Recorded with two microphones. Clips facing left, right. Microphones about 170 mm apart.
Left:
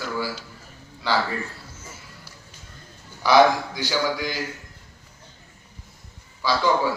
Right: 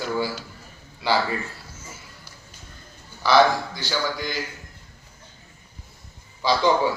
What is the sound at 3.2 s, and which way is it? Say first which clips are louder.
A man's voice: left 1 dB; 15° left (ahead or behind).